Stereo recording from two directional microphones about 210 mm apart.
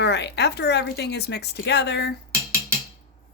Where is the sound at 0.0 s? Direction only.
55° left (ahead or behind).